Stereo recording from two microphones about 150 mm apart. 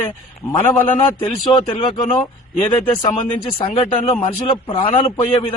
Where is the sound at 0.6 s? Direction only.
15° left (ahead or behind).